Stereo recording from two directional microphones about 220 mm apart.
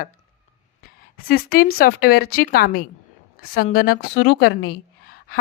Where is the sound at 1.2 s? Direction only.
40° left (ahead or behind).